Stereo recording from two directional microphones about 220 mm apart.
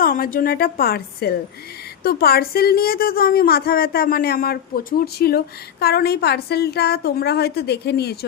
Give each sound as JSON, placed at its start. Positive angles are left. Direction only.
{"t": 0.0, "sound": "a woman's voice", "side_deg": 40}